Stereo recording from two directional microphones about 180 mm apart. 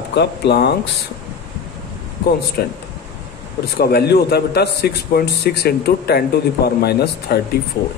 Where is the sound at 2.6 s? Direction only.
55° left (ahead or behind).